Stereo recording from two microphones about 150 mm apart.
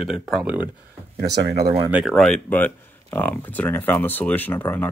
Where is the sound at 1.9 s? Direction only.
5° right (ahead or behind); by 4.9 s 15° left (ahead or behind).